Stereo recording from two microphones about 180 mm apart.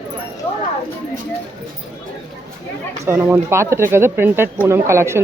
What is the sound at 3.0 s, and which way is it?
A woman's voice, 15° right (ahead or behind).